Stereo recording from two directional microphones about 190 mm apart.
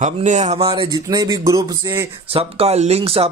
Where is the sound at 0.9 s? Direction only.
20° right (ahead or behind).